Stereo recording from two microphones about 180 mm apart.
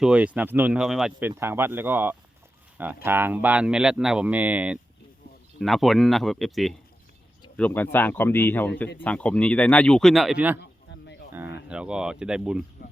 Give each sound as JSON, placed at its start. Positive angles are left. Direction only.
{"t": 0.0, "sound": "speech", "side_deg": -5}
{"t": 1.3, "sound": "speech", "side_deg": -15}
{"t": 10.6, "sound": "a sound", "side_deg": 80}
{"t": 11.3, "sound": "speech", "side_deg": -10}